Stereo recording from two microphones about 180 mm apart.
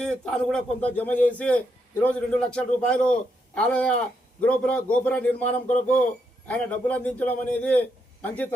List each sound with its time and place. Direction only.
0.0 s a man's voice: 5° left (ahead or behind)
5.5 s speech: 40° left (ahead or behind)
6.5 s a man's voice: 10° left (ahead or behind)